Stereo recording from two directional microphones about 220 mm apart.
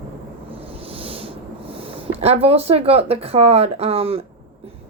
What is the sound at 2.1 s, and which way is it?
A woman's voice, 30° right (ahead or behind).